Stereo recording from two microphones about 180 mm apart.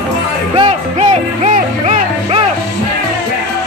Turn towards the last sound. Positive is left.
turn(degrees=-40)  # may be behind; listen again after turning